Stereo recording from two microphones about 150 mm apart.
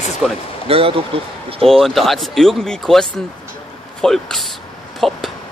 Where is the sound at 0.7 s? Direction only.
40° right (ahead or behind).